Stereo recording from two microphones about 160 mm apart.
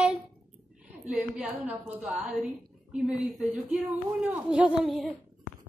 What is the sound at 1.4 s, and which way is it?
A woman's voice, 5° right (ahead or behind).